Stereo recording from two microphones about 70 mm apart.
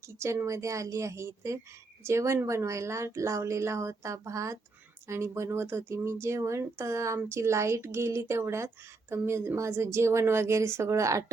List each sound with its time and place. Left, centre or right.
0.2 s a woman's voice: right